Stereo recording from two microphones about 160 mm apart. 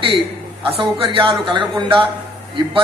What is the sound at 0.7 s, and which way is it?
A man's voice, 35° right (ahead or behind).